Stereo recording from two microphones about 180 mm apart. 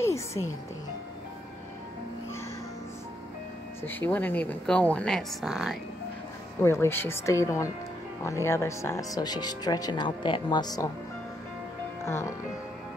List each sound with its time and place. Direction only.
0.0 s music: 15° left (ahead or behind)
3.8 s speech: 10° left (ahead or behind)
6.6 s speech: 15° left (ahead or behind)
12.0 s speech: 15° left (ahead or behind)